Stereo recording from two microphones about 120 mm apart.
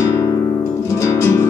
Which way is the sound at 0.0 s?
25° left (ahead or behind).